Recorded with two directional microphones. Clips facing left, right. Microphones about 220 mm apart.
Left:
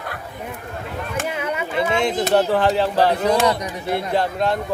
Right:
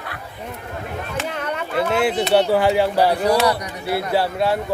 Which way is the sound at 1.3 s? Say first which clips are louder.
Left 1 dB; 10° left (ahead or behind).